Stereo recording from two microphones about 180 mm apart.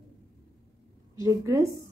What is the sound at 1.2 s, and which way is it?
Speech, 15° right (ahead or behind).